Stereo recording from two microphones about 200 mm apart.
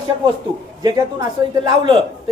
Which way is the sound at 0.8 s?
20° right (ahead or behind).